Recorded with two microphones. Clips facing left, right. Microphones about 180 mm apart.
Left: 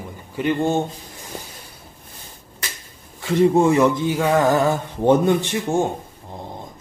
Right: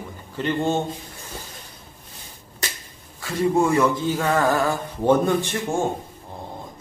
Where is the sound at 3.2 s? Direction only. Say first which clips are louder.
Left 5 dB; 20° left (ahead or behind).